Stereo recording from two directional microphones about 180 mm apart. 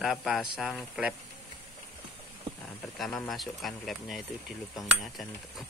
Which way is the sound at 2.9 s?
Centre (ahead or behind).